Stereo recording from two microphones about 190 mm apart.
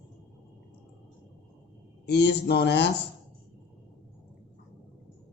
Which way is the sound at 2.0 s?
60° left (ahead or behind).